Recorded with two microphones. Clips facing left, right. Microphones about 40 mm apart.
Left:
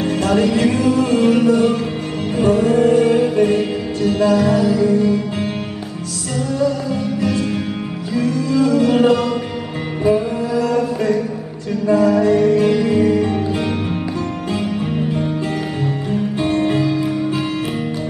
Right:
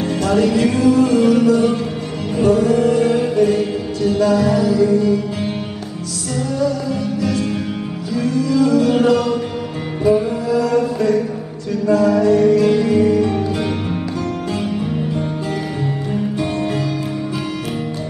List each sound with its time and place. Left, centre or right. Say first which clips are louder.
0.0 s music: even; left
6.6 s music: left 1 dB; left
10.5 s chant: right 2 dB; left
11.0 s music: right 1 dB; left
16.3 s music: left 3 dB; left